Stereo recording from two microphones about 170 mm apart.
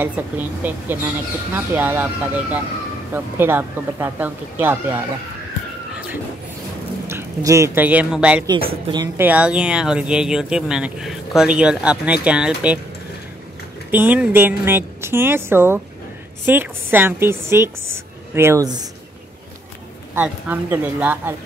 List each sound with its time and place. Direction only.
0.0 s a woman's voice: 10° right (ahead or behind)
7.1 s speech: 15° right (ahead or behind)
8.9 s speech: 25° right (ahead or behind)
9.2 s speech: 10° right (ahead or behind)
13.8 s a woman's voice: 10° right (ahead or behind)
20.2 s a woman's voice: 10° right (ahead or behind)